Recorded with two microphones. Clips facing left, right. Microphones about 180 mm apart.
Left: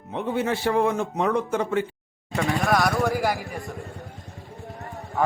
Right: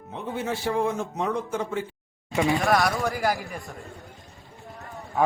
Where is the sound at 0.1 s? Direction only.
70° left (ahead or behind).